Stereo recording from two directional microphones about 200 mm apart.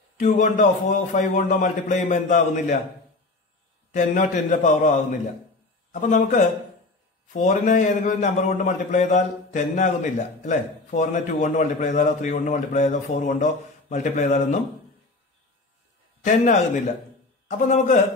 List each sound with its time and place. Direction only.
0.2 s a man's voice: 40° left (ahead or behind)
3.9 s a man's voice: 40° left (ahead or behind)
16.3 s a man's voice: 35° left (ahead or behind)